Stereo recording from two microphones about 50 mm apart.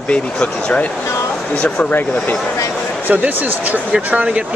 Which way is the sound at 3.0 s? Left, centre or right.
Right.